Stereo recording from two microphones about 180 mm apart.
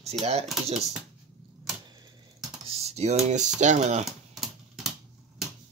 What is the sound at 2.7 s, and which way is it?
Speech, 35° right (ahead or behind).